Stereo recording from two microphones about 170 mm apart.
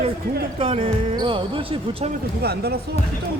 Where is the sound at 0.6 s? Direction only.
35° right (ahead or behind).